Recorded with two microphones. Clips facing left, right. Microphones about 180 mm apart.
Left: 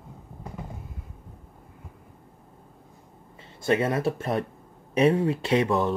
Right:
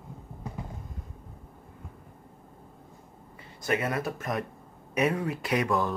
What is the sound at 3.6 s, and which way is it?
Speech, 25° left (ahead or behind).